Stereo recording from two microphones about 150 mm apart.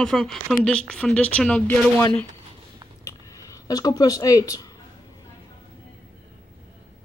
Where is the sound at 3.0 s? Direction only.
20° left (ahead or behind).